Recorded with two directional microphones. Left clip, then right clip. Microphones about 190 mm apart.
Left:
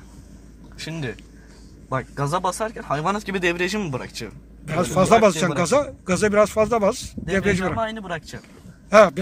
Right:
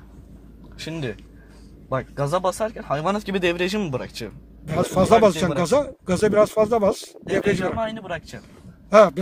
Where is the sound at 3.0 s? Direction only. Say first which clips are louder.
Even; 50° right (ahead or behind).